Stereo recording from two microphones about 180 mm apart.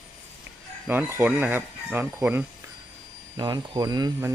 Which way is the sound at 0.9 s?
10° right (ahead or behind).